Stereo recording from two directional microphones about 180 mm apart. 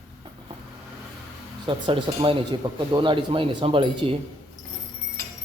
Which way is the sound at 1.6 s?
30° right (ahead or behind).